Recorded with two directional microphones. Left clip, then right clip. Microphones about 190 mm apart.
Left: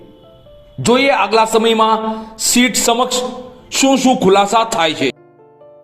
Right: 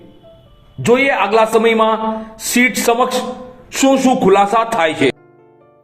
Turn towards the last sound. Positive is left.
turn(degrees=35)  # may be behind; listen again after turning